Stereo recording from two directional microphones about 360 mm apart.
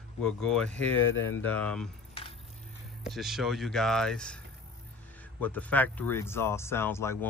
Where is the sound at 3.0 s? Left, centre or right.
Centre.